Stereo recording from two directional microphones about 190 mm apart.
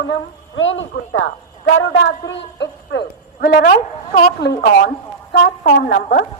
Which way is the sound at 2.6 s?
60° left (ahead or behind).